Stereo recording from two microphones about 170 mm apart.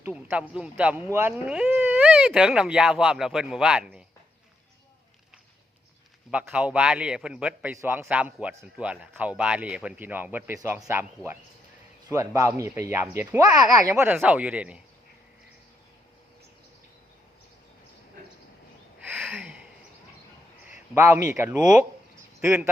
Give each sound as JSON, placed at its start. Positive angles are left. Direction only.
{"t": 0.0, "sound": "speech", "side_deg": -10}
{"t": 6.3, "sound": "speech", "side_deg": -10}
{"t": 12.0, "sound": "speech", "side_deg": -20}
{"t": 18.9, "sound": "a sound", "side_deg": -5}
{"t": 20.7, "sound": "a man's voice", "side_deg": -15}